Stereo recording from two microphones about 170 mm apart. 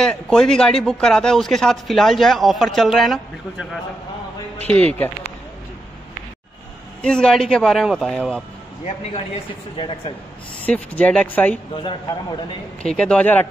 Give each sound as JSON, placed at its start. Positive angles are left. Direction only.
{"t": 0.0, "sound": "speech", "side_deg": 5}
{"t": 4.6, "sound": "speech", "side_deg": 5}
{"t": 7.0, "sound": "speech", "side_deg": 5}
{"t": 9.8, "sound": "speech", "side_deg": 30}
{"t": 10.6, "sound": "speech", "side_deg": 10}
{"t": 11.7, "sound": "speech", "side_deg": 30}
{"t": 12.8, "sound": "speech", "side_deg": 5}